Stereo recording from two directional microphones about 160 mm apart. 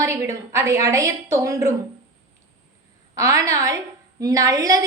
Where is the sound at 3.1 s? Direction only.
20° right (ahead or behind).